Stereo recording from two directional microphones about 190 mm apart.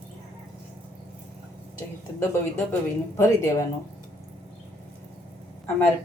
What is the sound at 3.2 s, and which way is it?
Speech, 15° left (ahead or behind).